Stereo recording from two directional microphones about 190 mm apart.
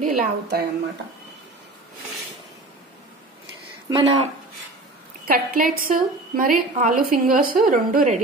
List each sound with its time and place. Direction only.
0.0 s a woman's voice: 50° right (ahead or behind)
3.9 s speech: 15° right (ahead or behind)
5.2 s a woman's voice: 50° right (ahead or behind)